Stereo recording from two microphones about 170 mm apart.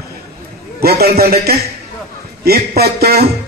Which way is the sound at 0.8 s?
65° right (ahead or behind).